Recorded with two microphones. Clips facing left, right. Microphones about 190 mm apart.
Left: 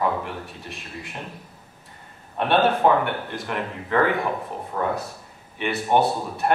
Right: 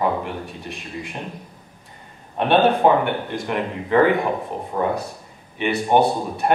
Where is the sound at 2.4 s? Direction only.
20° right (ahead or behind).